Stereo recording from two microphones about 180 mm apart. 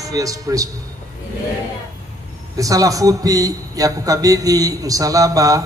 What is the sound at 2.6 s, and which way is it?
A man's voice, 20° right (ahead or behind).